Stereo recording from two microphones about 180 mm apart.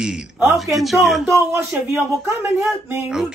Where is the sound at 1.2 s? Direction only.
15° right (ahead or behind).